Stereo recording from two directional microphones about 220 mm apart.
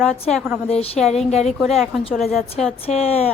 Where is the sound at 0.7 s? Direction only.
25° left (ahead or behind).